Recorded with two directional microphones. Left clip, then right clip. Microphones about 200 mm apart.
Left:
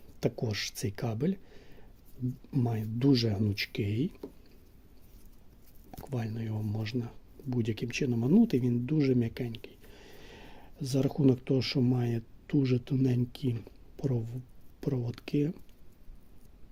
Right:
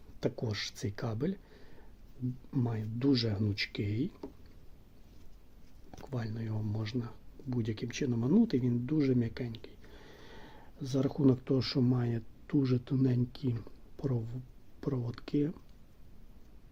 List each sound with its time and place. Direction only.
0.2 s speech: 20° left (ahead or behind)
3.0 s speech: 35° left (ahead or behind)
6.0 s speech: 20° left (ahead or behind)